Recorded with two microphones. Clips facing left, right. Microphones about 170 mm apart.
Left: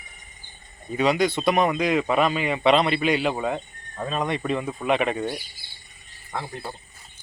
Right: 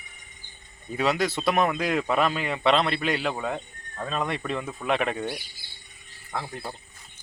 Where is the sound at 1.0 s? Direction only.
Centre (ahead or behind).